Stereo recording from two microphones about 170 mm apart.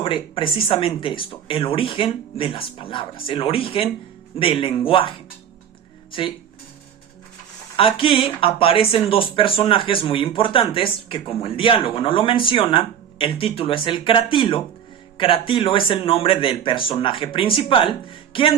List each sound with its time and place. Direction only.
0.0 s speech: 30° left (ahead or behind)
7.8 s speech: 30° left (ahead or behind)